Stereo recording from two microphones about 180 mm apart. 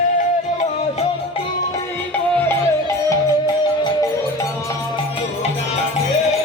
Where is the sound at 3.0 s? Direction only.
20° left (ahead or behind).